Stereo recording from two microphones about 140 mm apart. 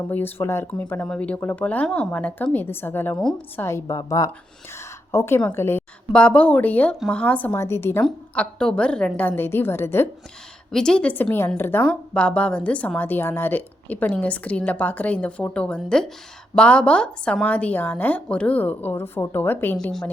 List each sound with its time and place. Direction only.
0.1 s a woman's voice: 15° left (ahead or behind)
8.0 s a woman's voice: 5° left (ahead or behind)
10.7 s a woman's voice: 5° left (ahead or behind)
19.7 s speech: 5° left (ahead or behind)